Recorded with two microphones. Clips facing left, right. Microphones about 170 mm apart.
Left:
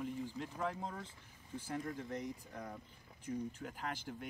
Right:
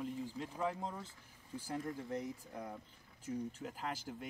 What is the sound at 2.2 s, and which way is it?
Speech, 10° right (ahead or behind).